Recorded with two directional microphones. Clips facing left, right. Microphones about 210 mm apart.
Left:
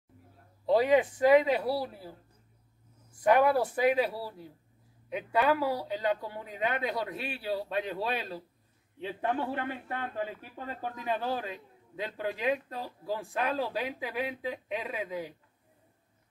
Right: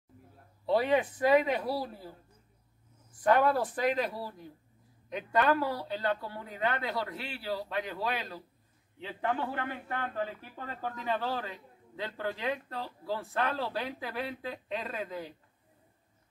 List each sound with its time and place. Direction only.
0.7 s a man's voice: 15° left (ahead or behind)
3.3 s a man's voice: 10° left (ahead or behind)